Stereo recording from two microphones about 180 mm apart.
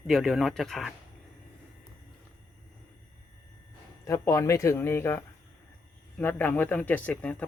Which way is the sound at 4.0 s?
20° left (ahead or behind).